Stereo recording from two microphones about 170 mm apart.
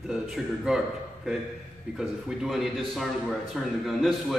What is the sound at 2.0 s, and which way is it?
A man's voice, centre (ahead or behind).